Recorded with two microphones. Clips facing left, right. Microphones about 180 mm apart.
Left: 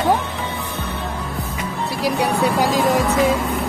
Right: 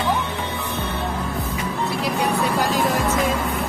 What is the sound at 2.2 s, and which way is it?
Speech, 10° left (ahead or behind).